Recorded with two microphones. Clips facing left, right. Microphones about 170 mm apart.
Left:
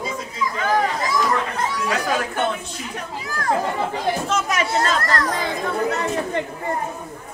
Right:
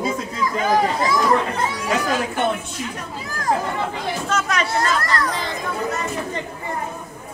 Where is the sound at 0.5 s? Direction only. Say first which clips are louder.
Right 2 dB; 15° right (ahead or behind).